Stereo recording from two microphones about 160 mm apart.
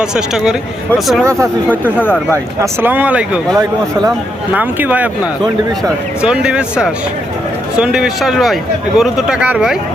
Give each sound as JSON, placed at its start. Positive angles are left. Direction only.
{"t": 0.0, "sound": "speech", "side_deg": -5}
{"t": 1.2, "sound": "speech", "side_deg": -20}
{"t": 1.7, "sound": "speech", "side_deg": 10}
{"t": 2.3, "sound": "speech", "side_deg": -15}